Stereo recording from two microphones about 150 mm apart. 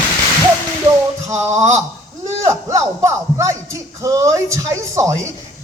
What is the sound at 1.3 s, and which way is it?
Speech, 20° right (ahead or behind).